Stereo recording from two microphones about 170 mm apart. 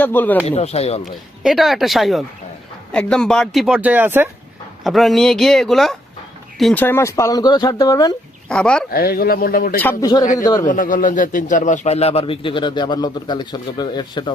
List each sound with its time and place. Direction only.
0.0 s speech: 10° left (ahead or behind)
0.4 s a man's voice: 40° left (ahead or behind)
1.0 s speech: centre (ahead or behind)
4.8 s speech: centre (ahead or behind)
6.8 s speech: 15° left (ahead or behind)
8.4 s speech: 5° left (ahead or behind)
8.9 s speech: 60° left (ahead or behind)
9.8 s speech: 20° left (ahead or behind)
10.7 s a man's voice: 50° left (ahead or behind); by 14.3 s 25° left (ahead or behind)